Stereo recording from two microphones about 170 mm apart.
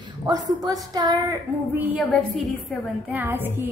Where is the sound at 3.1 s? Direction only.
10° right (ahead or behind).